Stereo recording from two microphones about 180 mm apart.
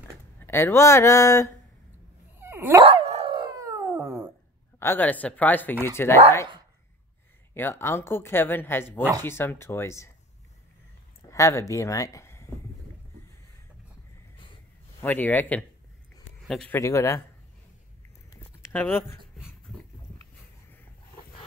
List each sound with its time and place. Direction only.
0.4 s a woman's voice: 15° left (ahead or behind)
2.3 s dog: 10° right (ahead or behind)
2.8 s dog: 30° right (ahead or behind); by 4.3 s 10° right (ahead or behind)
4.7 s a woman's voice: 10° left (ahead or behind)
7.5 s a woman's voice: 15° left (ahead or behind)
11.2 s speech: 15° left (ahead or behind)
15.0 s a woman's voice: 10° left (ahead or behind)
16.7 s a woman's voice: 15° left (ahead or behind)
18.7 s speech: 10° left (ahead or behind)